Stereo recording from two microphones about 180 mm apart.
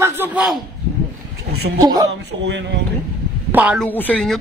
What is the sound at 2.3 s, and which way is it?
Speech, 80° right.